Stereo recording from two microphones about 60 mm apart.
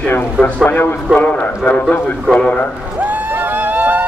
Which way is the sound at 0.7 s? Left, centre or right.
Left.